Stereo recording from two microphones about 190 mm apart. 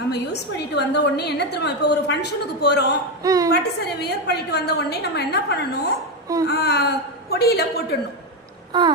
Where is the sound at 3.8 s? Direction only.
60° left (ahead or behind).